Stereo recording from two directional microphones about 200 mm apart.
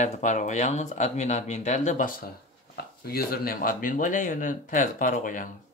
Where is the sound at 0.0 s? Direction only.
35° left (ahead or behind).